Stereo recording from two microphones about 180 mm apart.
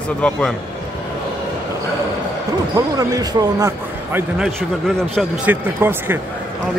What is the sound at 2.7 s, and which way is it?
Speech, 20° right (ahead or behind).